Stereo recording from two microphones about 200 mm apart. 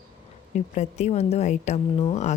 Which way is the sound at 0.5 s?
35° left (ahead or behind).